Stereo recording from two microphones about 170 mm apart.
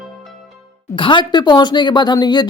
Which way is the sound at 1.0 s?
30° left (ahead or behind).